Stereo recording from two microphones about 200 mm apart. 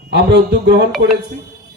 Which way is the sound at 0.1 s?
55° right (ahead or behind).